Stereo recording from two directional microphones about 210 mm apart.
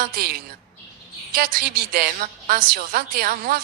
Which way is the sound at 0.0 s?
45° right (ahead or behind).